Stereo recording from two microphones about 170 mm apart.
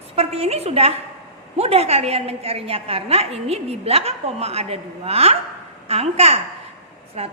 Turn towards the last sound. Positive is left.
turn(degrees=-40)  # may be behind; listen again after turning